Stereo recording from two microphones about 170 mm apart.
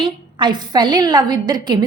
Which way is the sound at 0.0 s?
25° right (ahead or behind).